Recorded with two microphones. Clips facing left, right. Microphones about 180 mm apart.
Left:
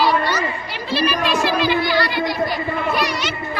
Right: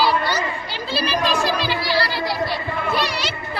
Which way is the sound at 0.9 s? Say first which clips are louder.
Left 2 dB; 35° right (ahead or behind).